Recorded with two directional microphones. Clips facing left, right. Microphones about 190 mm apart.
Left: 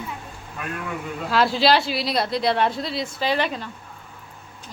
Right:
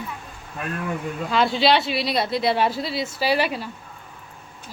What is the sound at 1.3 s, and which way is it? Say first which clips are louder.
Speech: even; centre (ahead or behind).